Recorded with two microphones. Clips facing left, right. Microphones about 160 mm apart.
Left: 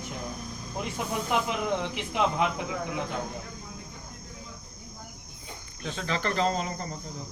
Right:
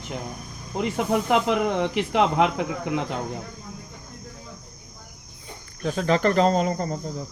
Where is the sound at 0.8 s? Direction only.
80° right.